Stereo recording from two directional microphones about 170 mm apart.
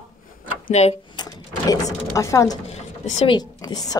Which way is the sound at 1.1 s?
25° left (ahead or behind).